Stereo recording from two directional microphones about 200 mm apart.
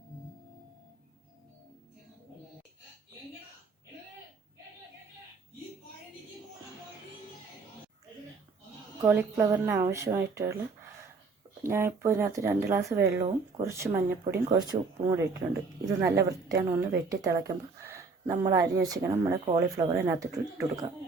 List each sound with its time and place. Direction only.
9.0 s a woman's voice: 10° right (ahead or behind)
11.6 s a woman's voice: 15° right (ahead or behind)